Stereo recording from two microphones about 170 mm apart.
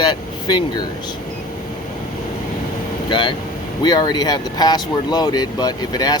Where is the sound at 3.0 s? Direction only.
30° left (ahead or behind).